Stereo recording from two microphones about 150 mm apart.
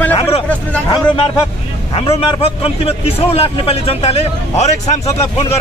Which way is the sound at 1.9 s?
40° left (ahead or behind).